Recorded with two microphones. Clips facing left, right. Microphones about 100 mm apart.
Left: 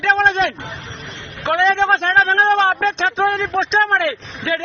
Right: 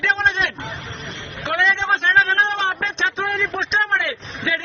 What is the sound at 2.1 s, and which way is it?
Speech, 35° left (ahead or behind).